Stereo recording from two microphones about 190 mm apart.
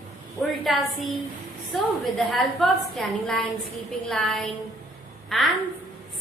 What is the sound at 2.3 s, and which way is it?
A woman's voice, centre (ahead or behind).